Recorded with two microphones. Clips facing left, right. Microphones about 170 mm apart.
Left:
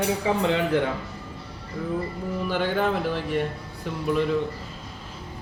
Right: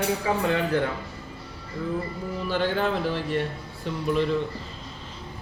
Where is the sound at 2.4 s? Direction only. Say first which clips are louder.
Even; 10° left (ahead or behind).